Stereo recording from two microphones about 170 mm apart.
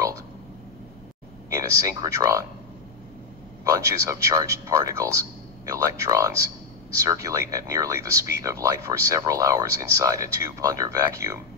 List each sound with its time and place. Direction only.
1.5 s speech: 20° right (ahead or behind)
3.6 s speech: 15° right (ahead or behind)